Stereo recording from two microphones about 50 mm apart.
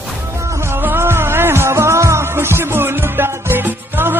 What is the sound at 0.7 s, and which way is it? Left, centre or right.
Music, right.